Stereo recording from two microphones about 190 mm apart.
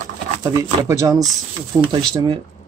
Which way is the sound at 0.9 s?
20° right (ahead or behind).